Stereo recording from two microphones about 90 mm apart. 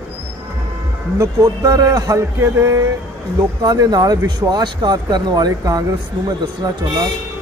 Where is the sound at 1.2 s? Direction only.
35° right (ahead or behind).